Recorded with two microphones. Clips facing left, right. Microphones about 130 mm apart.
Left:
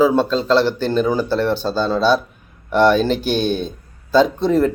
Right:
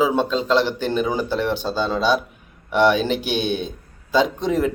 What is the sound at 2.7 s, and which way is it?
Speech, 40° left (ahead or behind).